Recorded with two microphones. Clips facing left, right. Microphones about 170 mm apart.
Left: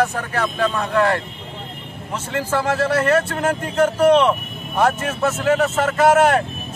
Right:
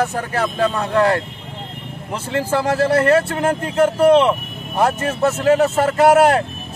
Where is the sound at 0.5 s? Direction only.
35° right (ahead or behind).